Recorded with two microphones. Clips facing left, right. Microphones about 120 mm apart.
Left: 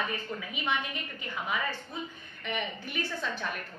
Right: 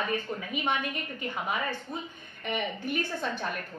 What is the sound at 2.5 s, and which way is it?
A woman's voice, 45° right (ahead or behind).